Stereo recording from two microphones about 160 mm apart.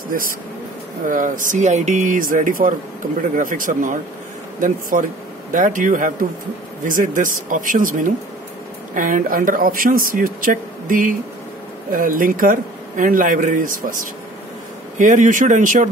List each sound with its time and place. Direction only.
1.0 s speech: 55° right (ahead or behind)